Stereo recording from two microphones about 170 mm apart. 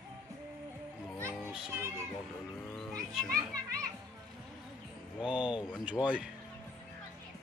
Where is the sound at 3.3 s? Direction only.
20° right (ahead or behind).